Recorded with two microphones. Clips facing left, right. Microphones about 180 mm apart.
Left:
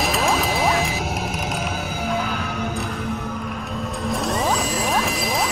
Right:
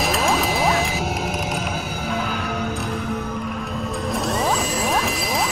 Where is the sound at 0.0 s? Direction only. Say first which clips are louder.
Even; centre (ahead or behind).